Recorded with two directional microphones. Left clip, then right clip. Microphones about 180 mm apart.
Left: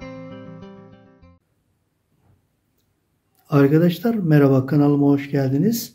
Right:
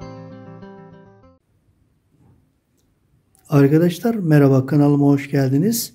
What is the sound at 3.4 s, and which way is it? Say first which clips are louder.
Speech: right 1 dB; 25° right (ahead or behind).